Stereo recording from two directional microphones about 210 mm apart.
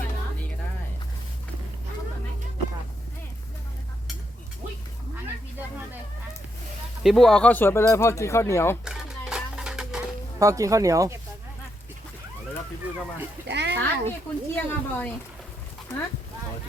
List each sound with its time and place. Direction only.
7.0 s speech: centre (ahead or behind)
8.8 s a sound: 5° right (ahead or behind)
10.4 s speech: 15° right (ahead or behind)
13.5 s a child's voice: 55° right (ahead or behind)
13.7 s speech: 10° left (ahead or behind)